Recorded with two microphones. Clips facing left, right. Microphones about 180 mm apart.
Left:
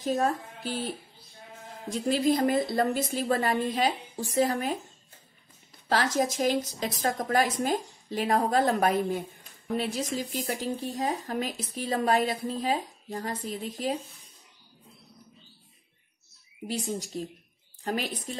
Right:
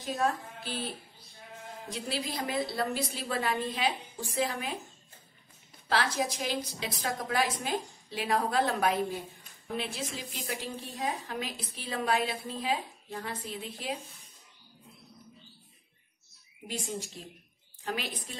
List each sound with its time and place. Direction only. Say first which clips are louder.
1.9 s a woman's voice: left 11 dB; 45° left (ahead or behind)
5.9 s a woman's voice: left 4 dB; 45° left (ahead or behind)
16.7 s a woman's voice: left 5 dB; 40° left (ahead or behind)